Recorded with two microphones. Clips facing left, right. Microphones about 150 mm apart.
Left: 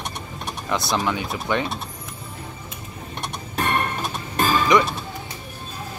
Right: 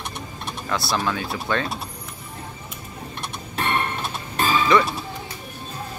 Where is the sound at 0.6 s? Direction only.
20° left (ahead or behind).